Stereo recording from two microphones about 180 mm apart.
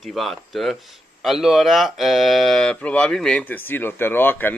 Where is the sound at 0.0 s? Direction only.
Centre (ahead or behind).